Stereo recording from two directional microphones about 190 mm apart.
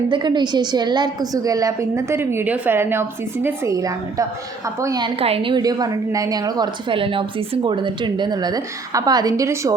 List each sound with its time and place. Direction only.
0.1 s a woman's voice: 25° right (ahead or behind)